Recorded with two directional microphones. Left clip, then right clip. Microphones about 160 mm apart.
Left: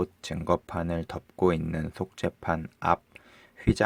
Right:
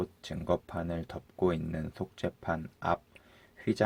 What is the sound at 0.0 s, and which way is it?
Speech, 45° left (ahead or behind).